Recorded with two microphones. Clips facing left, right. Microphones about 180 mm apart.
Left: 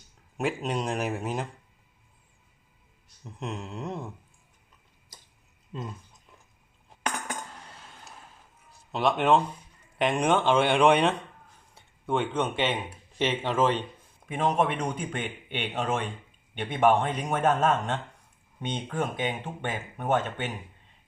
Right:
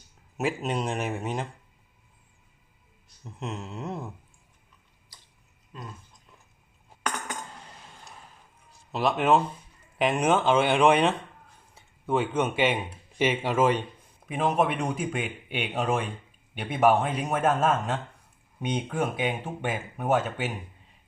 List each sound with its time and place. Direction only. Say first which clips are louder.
0.3 s a man's voice: right 1 dB; 5° right (ahead or behind)
3.2 s a man's voice: even; centre (ahead or behind)
5.7 s speech: left 5 dB; 25° left (ahead or behind)
8.9 s a man's voice: even; centre (ahead or behind)